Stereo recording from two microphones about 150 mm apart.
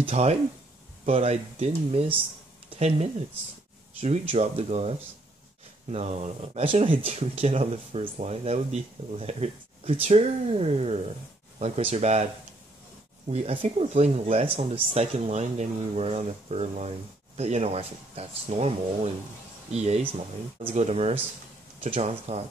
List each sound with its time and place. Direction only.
0.0 s speech: 45° right (ahead or behind)
4.0 s speech: 45° right (ahead or behind)
13.3 s speech: 45° right (ahead or behind)